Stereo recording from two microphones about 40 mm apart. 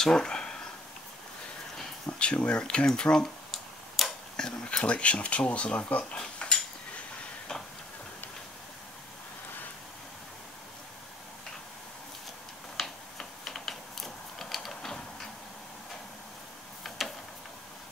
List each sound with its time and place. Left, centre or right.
0.0 s a sound: centre
2.0 s speech: left
3.5 s tick-tock: centre
4.4 s speech: centre
4.8 s speech: left
12.7 s typing: centre